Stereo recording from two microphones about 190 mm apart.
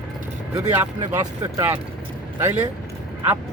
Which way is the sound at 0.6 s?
20° right (ahead or behind).